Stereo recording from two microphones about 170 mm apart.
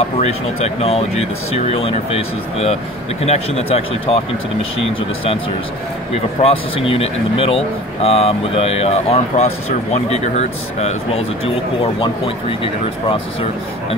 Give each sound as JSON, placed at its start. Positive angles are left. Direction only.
{"t": 0.7, "sound": "speech", "side_deg": 35}
{"t": 6.4, "sound": "speech", "side_deg": 35}